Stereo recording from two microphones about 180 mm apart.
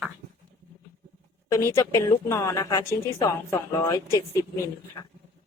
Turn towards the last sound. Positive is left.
turn(degrees=15)  # may be behind; listen again after turning